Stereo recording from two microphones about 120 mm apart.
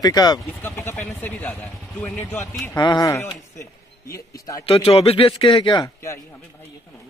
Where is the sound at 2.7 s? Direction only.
35° left (ahead or behind).